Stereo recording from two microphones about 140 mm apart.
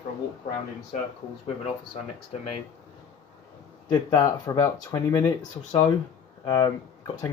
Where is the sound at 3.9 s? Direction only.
30° left (ahead or behind).